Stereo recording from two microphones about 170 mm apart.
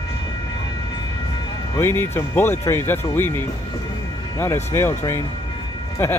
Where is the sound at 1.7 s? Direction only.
15° left (ahead or behind).